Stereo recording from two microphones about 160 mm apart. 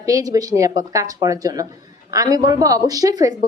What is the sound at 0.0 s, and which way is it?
A woman's voice, 20° right (ahead or behind).